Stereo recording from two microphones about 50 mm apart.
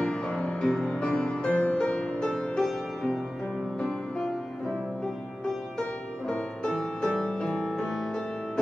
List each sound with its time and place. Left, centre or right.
0.0 s music: left
0.4 s music: centre
1.9 s music: centre
5.8 s music: centre
7.9 s music: centre